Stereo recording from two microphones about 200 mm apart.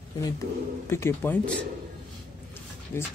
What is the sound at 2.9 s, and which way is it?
Speech, 10° left (ahead or behind).